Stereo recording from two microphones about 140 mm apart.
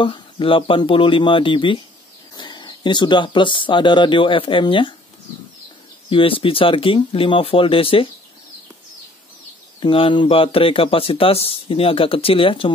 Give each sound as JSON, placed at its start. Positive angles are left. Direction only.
{"t": 0.0, "sound": "speech", "side_deg": 40}
{"t": 6.0, "sound": "speech", "side_deg": 40}
{"t": 9.8, "sound": "speech", "side_deg": 40}